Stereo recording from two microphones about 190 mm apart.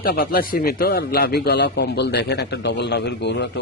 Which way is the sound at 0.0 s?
50° left (ahead or behind).